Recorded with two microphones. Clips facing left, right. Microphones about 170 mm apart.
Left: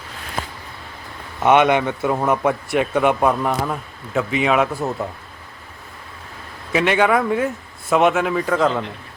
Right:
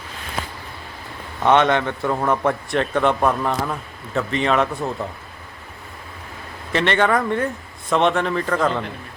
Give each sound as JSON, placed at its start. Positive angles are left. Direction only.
{"t": 1.4, "sound": "speech", "side_deg": 15}
{"t": 2.5, "sound": "speech", "side_deg": 5}
{"t": 6.7, "sound": "speech", "side_deg": 5}